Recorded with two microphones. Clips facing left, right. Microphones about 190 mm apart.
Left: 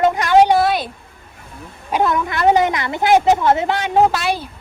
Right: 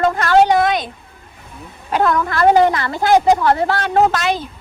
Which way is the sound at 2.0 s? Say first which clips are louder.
Right 2 dB; 20° left (ahead or behind).